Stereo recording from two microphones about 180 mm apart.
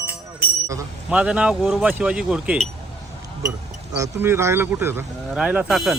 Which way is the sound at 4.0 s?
15° right (ahead or behind).